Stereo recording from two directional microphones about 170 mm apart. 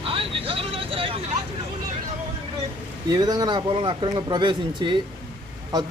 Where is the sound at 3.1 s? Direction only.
25° right (ahead or behind).